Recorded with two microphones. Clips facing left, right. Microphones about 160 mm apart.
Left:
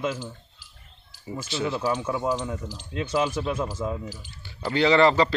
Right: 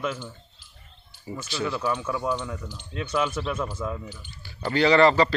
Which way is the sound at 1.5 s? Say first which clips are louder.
Left 1 dB; 20° left (ahead or behind).